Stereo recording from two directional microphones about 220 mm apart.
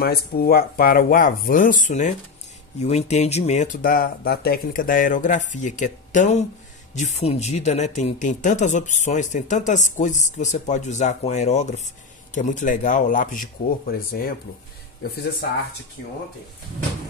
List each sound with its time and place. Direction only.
0.0 s speech: 45° left (ahead or behind)